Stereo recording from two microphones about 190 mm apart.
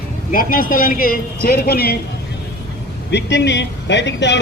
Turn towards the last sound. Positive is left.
turn(degrees=65)  # may be behind; listen again after turning